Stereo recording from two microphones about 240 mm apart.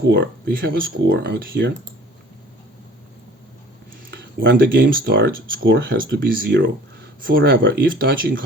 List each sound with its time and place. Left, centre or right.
0.0 s speech: right
4.1 s speech: right